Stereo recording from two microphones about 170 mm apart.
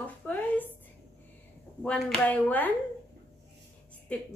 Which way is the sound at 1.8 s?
5° left (ahead or behind).